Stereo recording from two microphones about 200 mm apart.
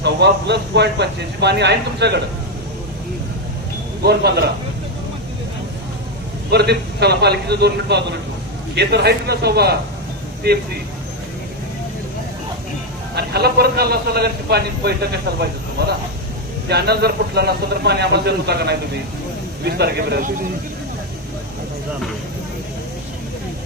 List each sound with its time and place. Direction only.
0.0 s speech: 60° right (ahead or behind)
4.0 s a man's voice: 55° right (ahead or behind)
6.5 s a man's voice: 55° right (ahead or behind)
13.1 s a man's voice: 50° right (ahead or behind)
16.6 s a man's voice: 55° right (ahead or behind)